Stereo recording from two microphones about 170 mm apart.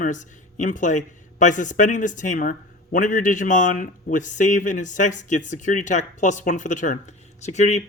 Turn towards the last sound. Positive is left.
turn(degrees=45)  # may be behind; listen again after turning